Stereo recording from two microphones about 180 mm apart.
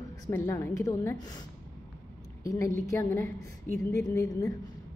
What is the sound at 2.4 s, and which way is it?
A woman's voice, 15° left (ahead or behind).